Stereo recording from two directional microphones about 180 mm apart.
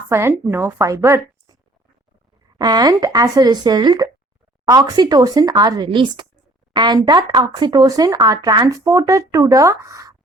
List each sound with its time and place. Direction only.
0.1 s a woman's voice: 15° right (ahead or behind)
2.6 s speech: 25° right (ahead or behind)